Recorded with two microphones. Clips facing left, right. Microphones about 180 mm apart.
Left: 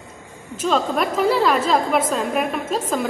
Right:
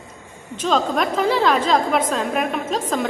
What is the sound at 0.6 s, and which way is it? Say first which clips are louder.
A woman's voice: even; 5° left (ahead or behind).